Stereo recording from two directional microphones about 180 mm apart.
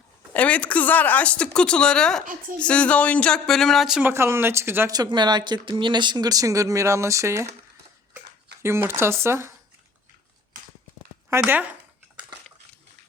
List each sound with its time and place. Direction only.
0.3 s speech: 10° left (ahead or behind)
4.1 s speech: 15° right (ahead or behind)
8.6 s speech: 15° right (ahead or behind)
11.3 s speech: 10° right (ahead or behind)